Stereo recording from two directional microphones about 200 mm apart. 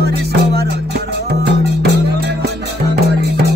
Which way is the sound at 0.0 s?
55° right (ahead or behind).